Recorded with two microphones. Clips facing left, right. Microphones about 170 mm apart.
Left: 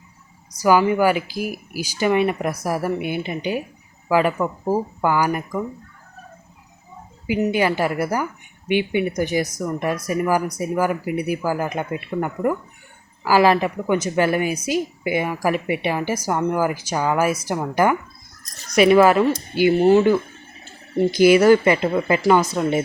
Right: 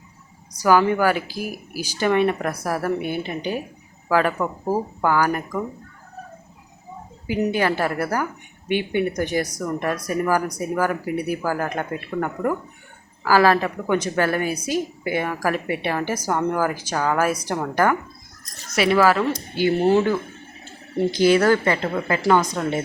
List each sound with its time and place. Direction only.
0.6 s a woman's voice: 10° left (ahead or behind)
7.3 s a woman's voice: 10° left (ahead or behind)
19.3 s a woman's voice: 10° left (ahead or behind)